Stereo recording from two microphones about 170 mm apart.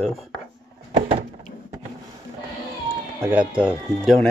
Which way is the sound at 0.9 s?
35° right (ahead or behind).